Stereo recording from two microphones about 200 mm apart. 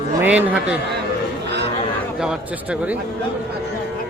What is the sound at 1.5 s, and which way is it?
Chatter, 55° right (ahead or behind).